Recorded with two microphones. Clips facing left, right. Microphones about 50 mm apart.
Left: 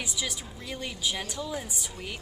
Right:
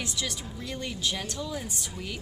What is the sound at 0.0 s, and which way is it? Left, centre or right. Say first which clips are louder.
A woman's voice: right 1 dB; centre.